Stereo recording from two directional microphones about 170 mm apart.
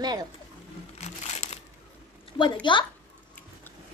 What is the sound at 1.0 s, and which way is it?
Crumpling, 40° left (ahead or behind).